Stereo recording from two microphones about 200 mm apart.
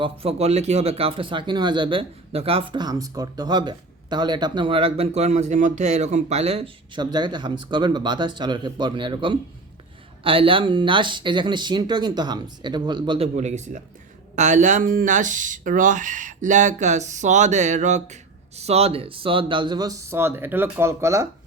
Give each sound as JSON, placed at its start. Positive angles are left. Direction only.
{"t": 0.0, "sound": "speech", "side_deg": -30}